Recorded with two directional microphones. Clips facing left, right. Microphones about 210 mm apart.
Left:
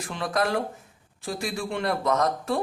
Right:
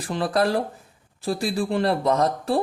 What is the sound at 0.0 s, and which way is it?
A man's voice, 35° right (ahead or behind).